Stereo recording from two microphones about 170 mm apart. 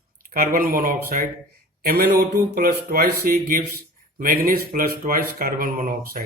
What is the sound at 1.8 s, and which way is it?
Speech, 70° right (ahead or behind).